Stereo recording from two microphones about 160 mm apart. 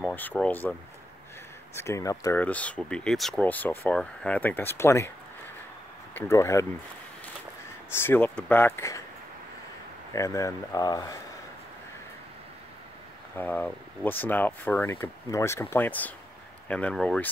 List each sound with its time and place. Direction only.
0.0 s speech: 10° left (ahead or behind)
1.8 s speech: 20° left (ahead or behind)
2.4 s speech: 10° left (ahead or behind)
6.1 s speech: 15° left (ahead or behind)
7.9 s speech: 15° left (ahead or behind)
10.1 s speech: 20° left (ahead or behind)
13.4 s speech: 10° left (ahead or behind)